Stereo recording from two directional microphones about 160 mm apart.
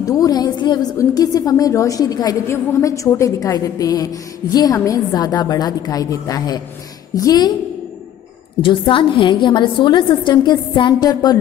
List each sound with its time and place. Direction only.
0.0 s a woman's voice: 20° left (ahead or behind)
8.6 s a woman's voice: 30° left (ahead or behind)